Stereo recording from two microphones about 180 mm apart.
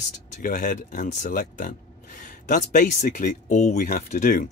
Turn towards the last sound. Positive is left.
turn(degrees=45)  # may be behind; listen again after turning